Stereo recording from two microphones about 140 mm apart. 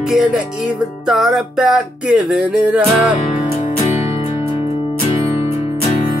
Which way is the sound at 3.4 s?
40° left (ahead or behind).